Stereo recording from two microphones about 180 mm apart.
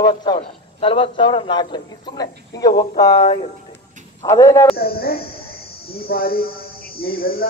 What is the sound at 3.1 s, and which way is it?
Speech, 40° left (ahead or behind).